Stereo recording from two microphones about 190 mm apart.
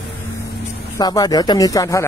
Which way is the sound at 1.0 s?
20° left (ahead or behind).